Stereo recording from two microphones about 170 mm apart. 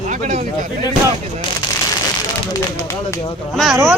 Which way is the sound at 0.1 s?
45° right (ahead or behind).